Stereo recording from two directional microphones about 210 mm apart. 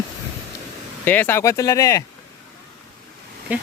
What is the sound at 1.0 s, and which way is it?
Speech, 10° left (ahead or behind).